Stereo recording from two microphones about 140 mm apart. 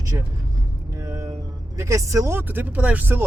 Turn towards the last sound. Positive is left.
turn(degrees=-15)  # may be behind; listen again after turning